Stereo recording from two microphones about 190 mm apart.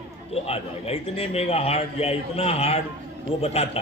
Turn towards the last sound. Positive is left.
turn(degrees=30)  # may be behind; listen again after turning